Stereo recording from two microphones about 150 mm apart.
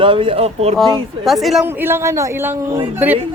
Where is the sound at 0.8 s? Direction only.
Centre (ahead or behind).